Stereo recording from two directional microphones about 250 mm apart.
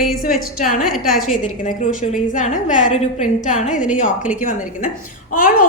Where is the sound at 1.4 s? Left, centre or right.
Left.